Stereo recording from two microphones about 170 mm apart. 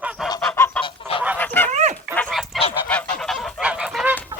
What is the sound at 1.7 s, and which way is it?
Dog, 45° right (ahead or behind).